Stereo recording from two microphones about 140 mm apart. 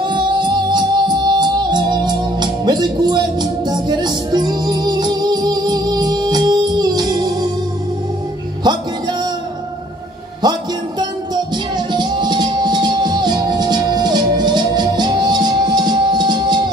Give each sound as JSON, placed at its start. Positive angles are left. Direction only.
{"t": 0.0, "sound": "music", "side_deg": -30}
{"t": 8.6, "sound": "music", "side_deg": -30}
{"t": 10.4, "sound": "music", "side_deg": -30}